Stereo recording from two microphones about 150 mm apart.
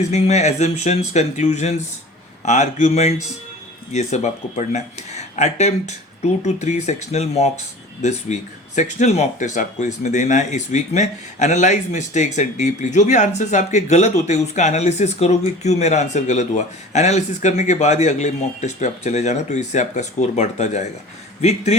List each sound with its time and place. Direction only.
0.1 s speech: 50° left (ahead or behind)